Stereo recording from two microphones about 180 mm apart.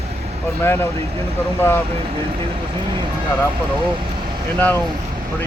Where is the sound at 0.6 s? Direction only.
10° left (ahead or behind).